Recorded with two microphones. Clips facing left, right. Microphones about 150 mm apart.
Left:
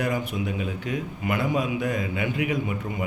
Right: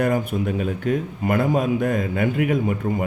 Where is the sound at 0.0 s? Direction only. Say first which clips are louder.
Right 6 dB; 50° right (ahead or behind).